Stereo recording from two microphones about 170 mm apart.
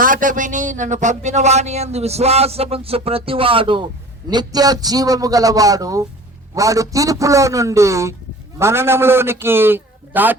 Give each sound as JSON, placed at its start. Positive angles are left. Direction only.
{"t": 0.0, "sound": "a man's voice", "side_deg": -50}